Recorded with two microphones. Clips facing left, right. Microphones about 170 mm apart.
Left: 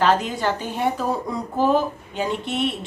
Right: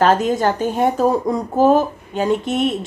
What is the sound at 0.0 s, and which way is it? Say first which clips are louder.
A woman's voice: right 5 dB; 45° right (ahead or behind).